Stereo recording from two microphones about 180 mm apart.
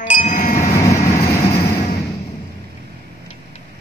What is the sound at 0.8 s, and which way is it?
Vehicle, 15° left (ahead or behind).